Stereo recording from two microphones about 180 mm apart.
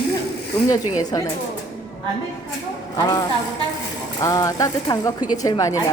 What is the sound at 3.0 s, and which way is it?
Speech, 20° left (ahead or behind).